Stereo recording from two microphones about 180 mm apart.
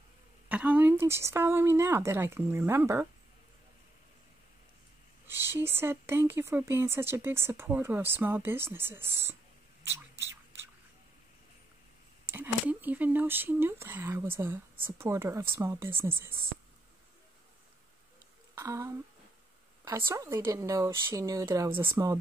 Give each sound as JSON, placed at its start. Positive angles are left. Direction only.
{"t": 0.5, "sound": "speech", "side_deg": -10}
{"t": 5.2, "sound": "speech", "side_deg": -10}
{"t": 9.8, "sound": "a sound", "side_deg": -15}
{"t": 12.3, "sound": "speech", "side_deg": -10}
{"t": 18.5, "sound": "speech", "side_deg": -15}
{"t": 20.1, "sound": "speech", "side_deg": -15}